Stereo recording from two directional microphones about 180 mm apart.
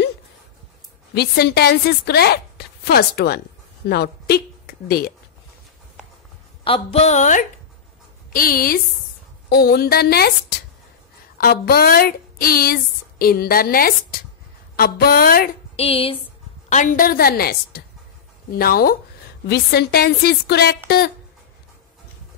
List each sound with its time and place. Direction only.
1.1 s a woman's voice: 60° left (ahead or behind)
6.6 s a woman's voice: 35° left (ahead or behind); by 10.3 s 60° left (ahead or behind)
11.3 s a woman's voice: 60° left (ahead or behind)
15.7 s a woman's voice: 35° left (ahead or behind)
16.6 s a woman's voice: 45° left (ahead or behind); by 21.1 s 65° left (ahead or behind)